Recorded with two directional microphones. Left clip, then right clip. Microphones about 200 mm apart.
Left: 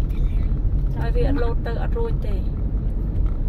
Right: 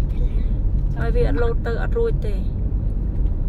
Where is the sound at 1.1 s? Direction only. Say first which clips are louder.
Right 3 dB; 35° right (ahead or behind).